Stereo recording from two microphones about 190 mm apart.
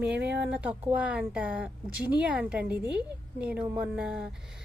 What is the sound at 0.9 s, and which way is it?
A woman's voice, 5° right (ahead or behind).